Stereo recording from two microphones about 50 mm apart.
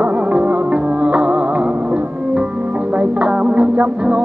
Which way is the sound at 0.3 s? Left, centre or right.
Right.